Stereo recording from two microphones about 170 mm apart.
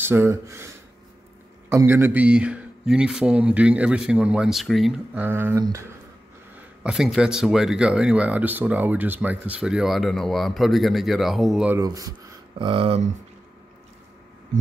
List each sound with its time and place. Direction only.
0.0 s speech: 15° right (ahead or behind)
1.7 s speech: 15° right (ahead or behind)
6.8 s speech: 5° right (ahead or behind)
11.7 s speech: 20° right (ahead or behind)
12.5 s speech: 30° right (ahead or behind)